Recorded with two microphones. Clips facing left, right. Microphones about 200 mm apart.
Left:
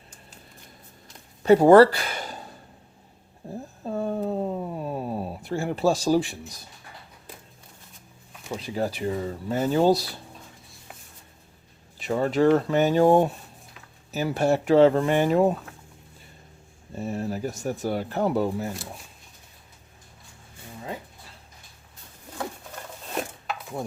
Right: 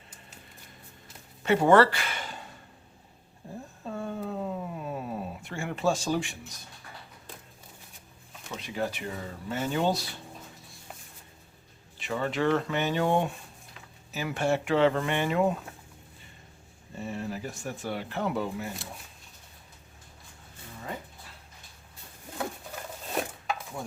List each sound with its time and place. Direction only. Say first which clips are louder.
1.5 s speech: left 7 dB; 40° left (ahead or behind)
3.8 s a sound: left 7 dB; 35° left (ahead or behind)
8.4 s speech: left 4 dB; 35° left (ahead or behind)
11.9 s speech: left 7 dB; 40° left (ahead or behind)
17.0 s speech: left 6 dB; 40° left (ahead or behind)